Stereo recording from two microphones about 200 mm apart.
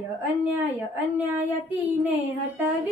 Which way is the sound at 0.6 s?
10° right (ahead or behind).